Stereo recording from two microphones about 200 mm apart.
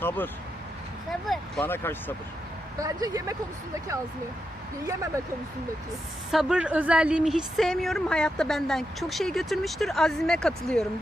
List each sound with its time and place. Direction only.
1.3 s speech: 5° left (ahead or behind)
2.7 s speech: 20° right (ahead or behind)
6.3 s a woman's voice: 5° right (ahead or behind)